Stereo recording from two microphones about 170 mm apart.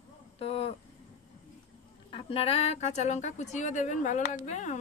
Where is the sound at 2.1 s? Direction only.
35° left (ahead or behind).